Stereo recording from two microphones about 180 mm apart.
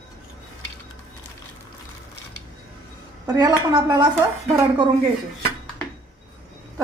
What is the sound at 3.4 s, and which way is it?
Speech, 20° right (ahead or behind).